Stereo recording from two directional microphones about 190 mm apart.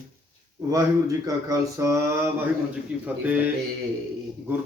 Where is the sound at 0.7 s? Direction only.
20° right (ahead or behind).